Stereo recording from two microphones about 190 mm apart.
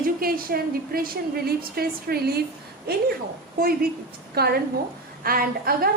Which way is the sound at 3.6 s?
50° right (ahead or behind).